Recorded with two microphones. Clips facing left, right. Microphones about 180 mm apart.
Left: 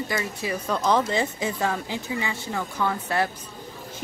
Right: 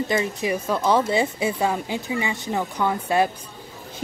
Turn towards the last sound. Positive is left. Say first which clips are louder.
# right 4 dB
turn(degrees=-15)  # may be behind; listen again after turning